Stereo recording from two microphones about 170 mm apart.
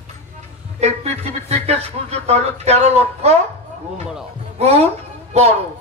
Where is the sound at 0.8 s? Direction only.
40° right (ahead or behind).